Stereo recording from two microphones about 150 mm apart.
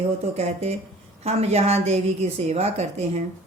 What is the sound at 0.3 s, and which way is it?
A woman's voice, 50° right (ahead or behind).